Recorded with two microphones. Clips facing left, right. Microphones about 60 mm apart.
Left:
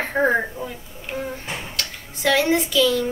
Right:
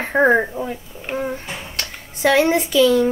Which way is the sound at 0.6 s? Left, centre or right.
Right.